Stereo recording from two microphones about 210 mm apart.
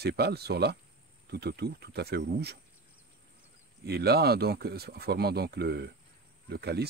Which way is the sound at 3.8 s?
50° right (ahead or behind).